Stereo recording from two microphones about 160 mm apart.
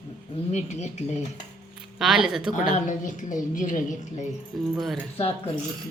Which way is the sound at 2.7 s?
50° left (ahead or behind).